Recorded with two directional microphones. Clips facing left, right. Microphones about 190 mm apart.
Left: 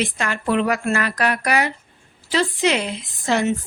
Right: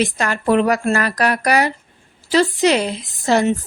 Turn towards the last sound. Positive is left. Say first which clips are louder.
# right 4 dB
turn(degrees=-35)  # may be behind; listen again after turning